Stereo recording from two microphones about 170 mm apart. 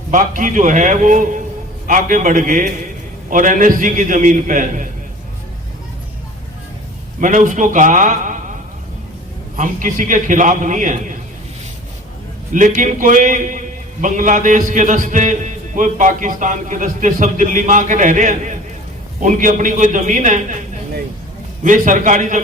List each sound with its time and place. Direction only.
0.1 s a man's voice: 50° right (ahead or behind)
7.2 s a man's voice: 50° right (ahead or behind)
9.6 s a man's voice: 50° right (ahead or behind)
12.5 s a man's voice: 50° right (ahead or behind)
21.6 s a man's voice: 50° right (ahead or behind)